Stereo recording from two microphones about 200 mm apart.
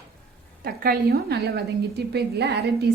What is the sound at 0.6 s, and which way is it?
A woman's voice, 50° right (ahead or behind).